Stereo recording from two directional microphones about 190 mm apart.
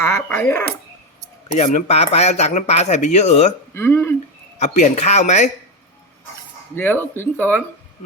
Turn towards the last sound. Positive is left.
turn(degrees=10)  # may be behind; listen again after turning